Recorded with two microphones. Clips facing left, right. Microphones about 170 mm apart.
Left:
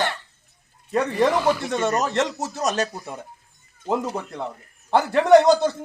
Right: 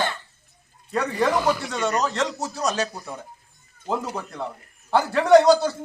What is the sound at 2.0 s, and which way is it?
A man's voice, 20° left (ahead or behind).